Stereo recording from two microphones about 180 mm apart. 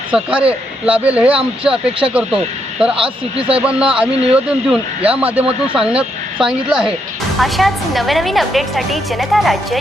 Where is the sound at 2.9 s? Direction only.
30° right (ahead or behind).